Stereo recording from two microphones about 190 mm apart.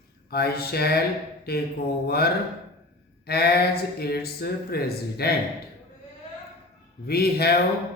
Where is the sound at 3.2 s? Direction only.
55° left (ahead or behind).